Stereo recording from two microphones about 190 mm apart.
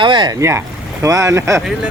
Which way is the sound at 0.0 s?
25° right (ahead or behind).